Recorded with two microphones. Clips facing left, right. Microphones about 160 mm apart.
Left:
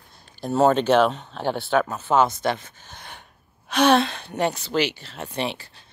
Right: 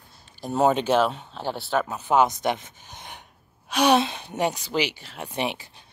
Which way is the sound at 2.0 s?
15° right (ahead or behind).